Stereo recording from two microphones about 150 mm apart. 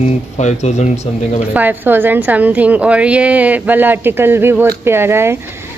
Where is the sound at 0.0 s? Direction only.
50° left (ahead or behind).